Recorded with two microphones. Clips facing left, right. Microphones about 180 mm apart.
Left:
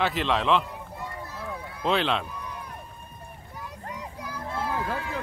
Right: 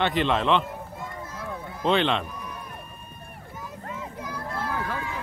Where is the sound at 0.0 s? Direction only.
Centre (ahead or behind).